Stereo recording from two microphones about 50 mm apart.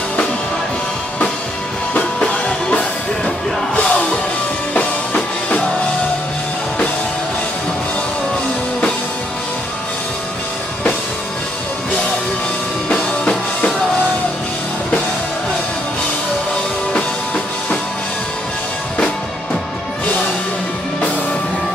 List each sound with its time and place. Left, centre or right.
2.0 s music: left
12.9 s music: centre